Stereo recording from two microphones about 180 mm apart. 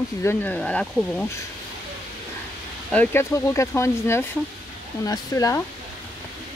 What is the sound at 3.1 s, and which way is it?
Speech, 15° left (ahead or behind).